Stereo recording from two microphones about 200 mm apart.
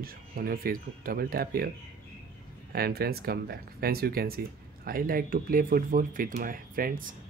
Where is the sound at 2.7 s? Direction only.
50° right (ahead or behind).